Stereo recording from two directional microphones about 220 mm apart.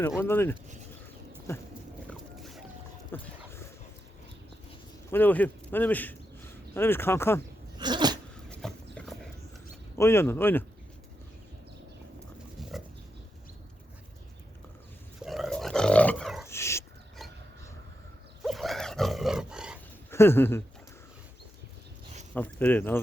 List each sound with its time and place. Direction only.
0.2 s speech: 10° left (ahead or behind)
2.0 s boat: centre (ahead or behind)
3.1 s dog: 10° left (ahead or behind)
5.1 s a man's voice: 10° left (ahead or behind)
7.8 s a sound: 20° right (ahead or behind)
8.4 s horse: 5° left (ahead or behind)
10.0 s speech: 10° left (ahead or behind)
12.5 s pig: centre (ahead or behind)
15.2 s dog: centre (ahead or behind)
16.5 s dog: 10° left (ahead or behind)
18.4 s dog: centre (ahead or behind)
20.1 s speech: 10° left (ahead or behind)
22.4 s speech: 10° left (ahead or behind)